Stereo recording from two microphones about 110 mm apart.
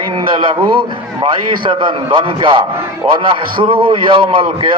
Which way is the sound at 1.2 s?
50° right (ahead or behind).